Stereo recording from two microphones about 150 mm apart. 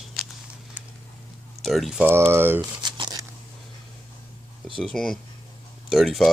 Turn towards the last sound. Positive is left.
turn(degrees=0)  # may be behind; listen again after turning